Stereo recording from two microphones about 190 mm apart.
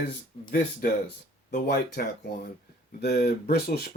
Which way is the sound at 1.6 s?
60° left (ahead or behind).